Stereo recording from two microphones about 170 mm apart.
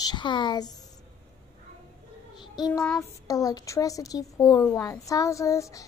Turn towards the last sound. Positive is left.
turn(degrees=20)  # may be behind; listen again after turning